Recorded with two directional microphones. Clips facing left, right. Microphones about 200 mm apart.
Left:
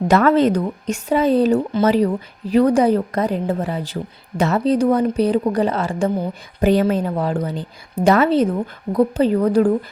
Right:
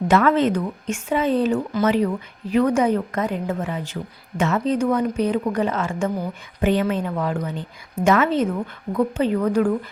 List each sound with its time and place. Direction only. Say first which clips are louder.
0.1 s a woman's voice: left 3 dB; 40° left (ahead or behind)